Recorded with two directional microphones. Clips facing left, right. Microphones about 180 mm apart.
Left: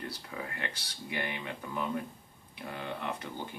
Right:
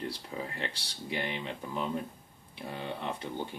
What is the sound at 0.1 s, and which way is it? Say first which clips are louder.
Speech: right 2 dB; 25° right (ahead or behind).